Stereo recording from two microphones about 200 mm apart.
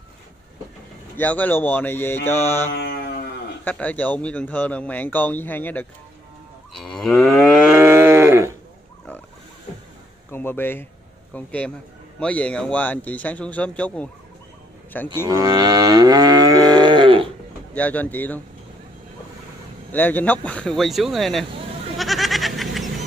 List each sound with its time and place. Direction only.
1.1 s speech: 10° left (ahead or behind)
2.7 s a sound: 55° left (ahead or behind)
3.6 s speech: 10° left (ahead or behind)
6.7 s moo: centre (ahead or behind)
7.8 s moo: 10° right (ahead or behind)
10.3 s speech: 10° left (ahead or behind)
15.2 s livestock: 20° right (ahead or behind)
17.7 s speech: 10° left (ahead or behind)
19.9 s speech: 10° left (ahead or behind)
21.9 s goat: centre (ahead or behind)